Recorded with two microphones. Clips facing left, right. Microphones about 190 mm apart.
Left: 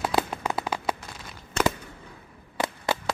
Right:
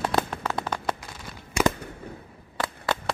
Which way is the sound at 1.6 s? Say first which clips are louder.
Right 2 dB; 10° right (ahead or behind).